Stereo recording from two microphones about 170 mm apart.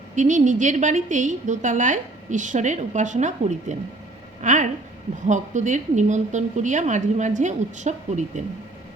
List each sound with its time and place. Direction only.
0.2 s a woman's voice: 45° right (ahead or behind)